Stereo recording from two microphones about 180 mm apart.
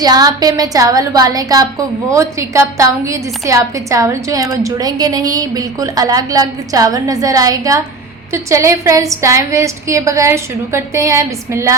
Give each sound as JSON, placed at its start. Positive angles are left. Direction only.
{"t": 0.0, "sound": "a woman's voice", "side_deg": -20}